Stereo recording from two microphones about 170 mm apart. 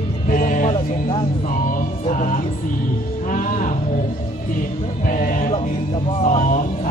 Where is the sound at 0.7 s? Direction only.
30° left (ahead or behind).